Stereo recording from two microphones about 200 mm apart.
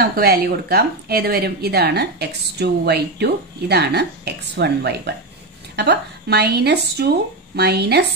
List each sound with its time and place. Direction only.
0.0 s a woman's voice: 50° right (ahead or behind)